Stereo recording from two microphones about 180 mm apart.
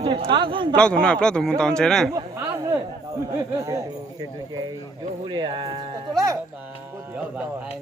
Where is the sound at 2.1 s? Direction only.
15° right (ahead or behind).